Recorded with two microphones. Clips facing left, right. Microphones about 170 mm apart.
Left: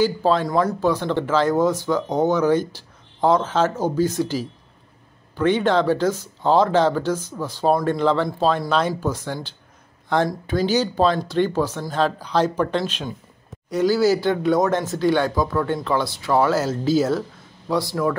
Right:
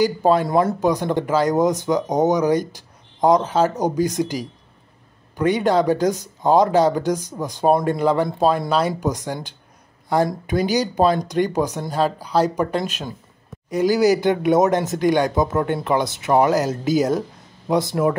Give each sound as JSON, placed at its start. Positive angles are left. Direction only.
{"t": 0.0, "sound": "speech", "side_deg": -15}